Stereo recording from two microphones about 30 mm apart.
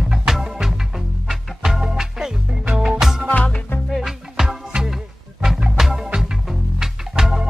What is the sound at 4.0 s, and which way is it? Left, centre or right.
Music, centre.